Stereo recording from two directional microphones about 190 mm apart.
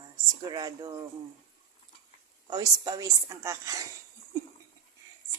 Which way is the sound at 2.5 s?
20° right (ahead or behind).